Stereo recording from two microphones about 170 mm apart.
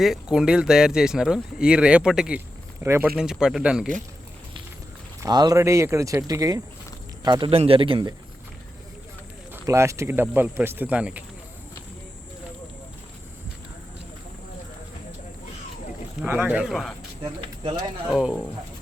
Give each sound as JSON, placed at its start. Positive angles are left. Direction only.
{"t": 0.0, "sound": "speech", "side_deg": 0}
{"t": 3.2, "sound": "speech", "side_deg": -5}
{"t": 5.2, "sound": "a man's voice", "side_deg": -25}
{"t": 9.6, "sound": "speech", "side_deg": -15}
{"t": 16.2, "sound": "speech", "side_deg": -10}
{"t": 17.2, "sound": "speech", "side_deg": -30}
{"t": 18.1, "sound": "speech", "side_deg": -5}